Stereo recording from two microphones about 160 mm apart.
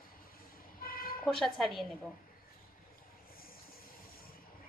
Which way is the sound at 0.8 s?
65° left (ahead or behind).